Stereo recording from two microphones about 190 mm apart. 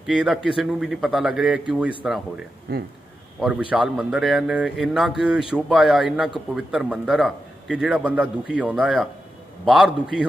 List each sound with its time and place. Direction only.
0.0 s a man's voice: centre (ahead or behind)
2.7 s speech: 55° right (ahead or behind)
3.3 s a man's voice: 5° right (ahead or behind)